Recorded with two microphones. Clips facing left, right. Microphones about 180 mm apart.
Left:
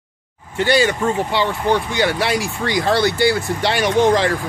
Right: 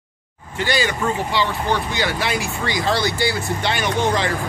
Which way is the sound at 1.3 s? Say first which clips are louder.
Left 3 dB; 55° left (ahead or behind).